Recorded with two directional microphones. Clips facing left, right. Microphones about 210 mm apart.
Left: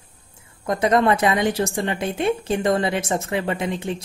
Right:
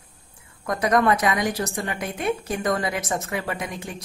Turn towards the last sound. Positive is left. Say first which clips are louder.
# left 6 dB
turn(degrees=25)  # may be behind; listen again after turning